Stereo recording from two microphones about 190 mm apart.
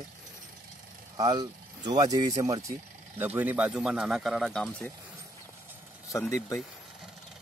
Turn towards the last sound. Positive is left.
turn(degrees=15)  # may be behind; listen again after turning